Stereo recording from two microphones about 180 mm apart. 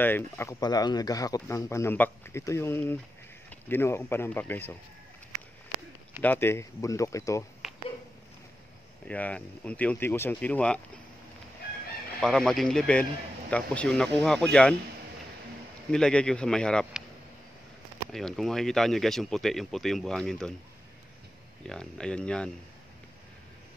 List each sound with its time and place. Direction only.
0.0 s speech: 10° left (ahead or behind)
6.2 s speech: 10° left (ahead or behind)
7.6 s a sound: centre (ahead or behind)
9.0 s speech: 10° left (ahead or behind)
12.2 s speech: centre (ahead or behind)
15.9 s speech: 5° left (ahead or behind)
18.1 s speech: centre (ahead or behind)
21.6 s speech: 5° left (ahead or behind)